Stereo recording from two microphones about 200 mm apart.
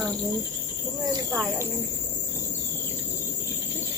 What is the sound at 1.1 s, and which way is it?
Cricket, 15° right (ahead or behind).